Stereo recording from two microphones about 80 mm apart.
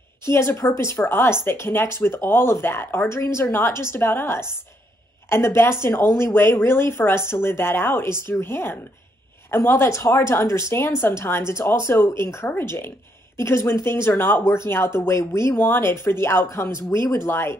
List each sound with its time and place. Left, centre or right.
0.2 s speech: left
1.0 s speech: left